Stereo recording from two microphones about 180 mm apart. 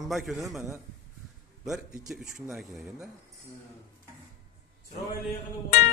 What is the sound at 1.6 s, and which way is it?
A man's voice, 5° right (ahead or behind).